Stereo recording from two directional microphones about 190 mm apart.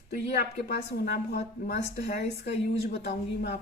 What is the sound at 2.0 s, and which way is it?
A woman's voice, 60° left (ahead or behind).